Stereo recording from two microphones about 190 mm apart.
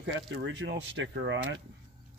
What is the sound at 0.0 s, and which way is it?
Speech, 65° right (ahead or behind).